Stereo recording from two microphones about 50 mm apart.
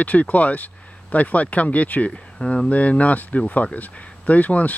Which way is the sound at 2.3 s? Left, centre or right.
Centre.